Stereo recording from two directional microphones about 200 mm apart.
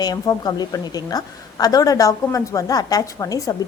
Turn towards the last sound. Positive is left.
turn(degrees=20)  # may be behind; listen again after turning